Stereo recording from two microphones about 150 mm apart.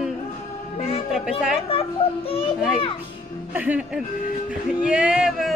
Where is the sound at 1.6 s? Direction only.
40° left (ahead or behind).